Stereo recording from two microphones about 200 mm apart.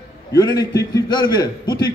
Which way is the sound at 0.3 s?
15° left (ahead or behind).